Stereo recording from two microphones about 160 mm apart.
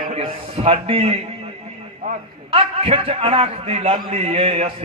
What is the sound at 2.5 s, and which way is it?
A man's voice, 35° right (ahead or behind).